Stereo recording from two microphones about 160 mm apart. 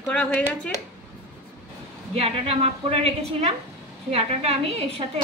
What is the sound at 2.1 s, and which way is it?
A woman's voice, 40° right (ahead or behind).